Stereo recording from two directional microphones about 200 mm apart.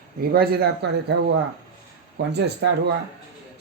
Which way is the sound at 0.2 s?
50° right (ahead or behind).